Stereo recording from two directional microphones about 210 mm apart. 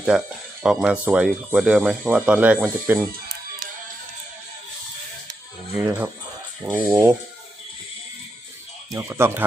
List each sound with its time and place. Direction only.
0.1 s speech: 5° right (ahead or behind)
5.7 s speech: 10° right (ahead or behind)
8.9 s speech: 15° right (ahead or behind)